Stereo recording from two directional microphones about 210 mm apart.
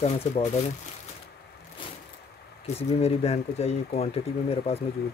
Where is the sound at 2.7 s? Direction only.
30° left (ahead or behind).